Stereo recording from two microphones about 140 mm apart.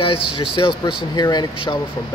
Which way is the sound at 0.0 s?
40° left (ahead or behind).